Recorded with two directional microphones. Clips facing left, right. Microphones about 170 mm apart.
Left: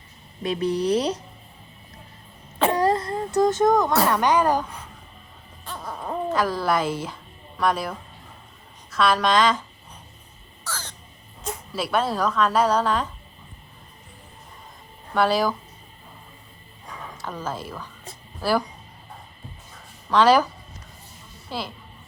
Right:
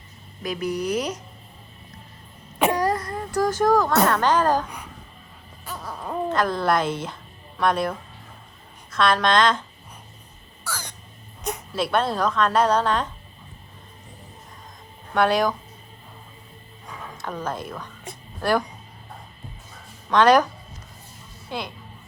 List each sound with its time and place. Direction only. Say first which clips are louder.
0.4 s speech: left 3 dB; 30° left (ahead or behind)
2.7 s a sound: left 2 dB; 25° left (ahead or behind)
4.1 s speech: even; 15° left (ahead or behind)
5.6 s speech: left 1 dB; centre (ahead or behind)
10.6 s crow: right 1 dB; 10° right (ahead or behind)
11.7 s speech: right 1 dB; 5° left (ahead or behind)
15.1 s speech: right 1 dB; 5° left (ahead or behind)
17.2 s speech: right 2 dB; 5° left (ahead or behind)
20.1 s speech: right 1 dB; 5° left (ahead or behind)